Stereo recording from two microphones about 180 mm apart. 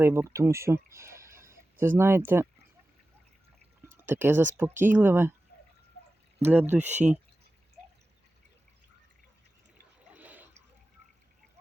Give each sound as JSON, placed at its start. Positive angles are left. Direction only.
{"t": 0.0, "sound": "speech", "side_deg": -15}
{"t": 3.9, "sound": "speech", "side_deg": -10}
{"t": 5.5, "sound": "a sound", "side_deg": 60}
{"t": 6.4, "sound": "speech", "side_deg": -10}
{"t": 10.1, "sound": "water", "side_deg": -10}